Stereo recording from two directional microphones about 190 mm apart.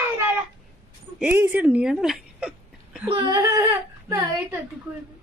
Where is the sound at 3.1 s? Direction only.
25° right (ahead or behind).